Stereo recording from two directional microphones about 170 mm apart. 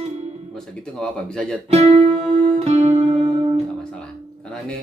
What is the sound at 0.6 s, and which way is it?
Speech, 5° left (ahead or behind).